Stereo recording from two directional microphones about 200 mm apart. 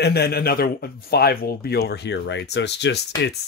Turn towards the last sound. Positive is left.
turn(degrees=60)  # may be behind; listen again after turning